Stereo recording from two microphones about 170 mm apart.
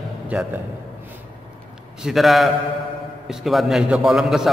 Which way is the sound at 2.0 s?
Centre (ahead or behind).